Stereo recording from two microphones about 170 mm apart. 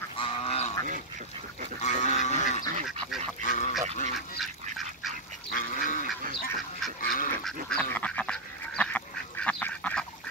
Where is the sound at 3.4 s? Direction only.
45° left (ahead or behind).